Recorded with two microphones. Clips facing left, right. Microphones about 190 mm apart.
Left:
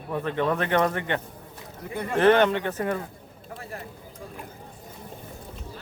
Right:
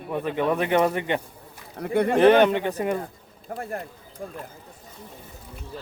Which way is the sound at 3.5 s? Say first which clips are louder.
Right 8 dB; 45° right (ahead or behind).